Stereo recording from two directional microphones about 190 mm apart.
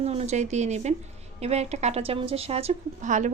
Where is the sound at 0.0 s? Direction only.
35° right (ahead or behind).